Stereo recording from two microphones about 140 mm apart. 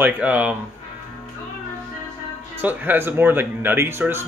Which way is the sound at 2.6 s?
10° right (ahead or behind).